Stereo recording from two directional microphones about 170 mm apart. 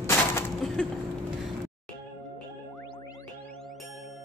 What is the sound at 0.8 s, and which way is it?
Speech, 5° left (ahead or behind).